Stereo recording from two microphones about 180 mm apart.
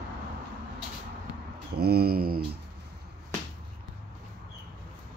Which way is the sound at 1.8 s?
60° right (ahead or behind).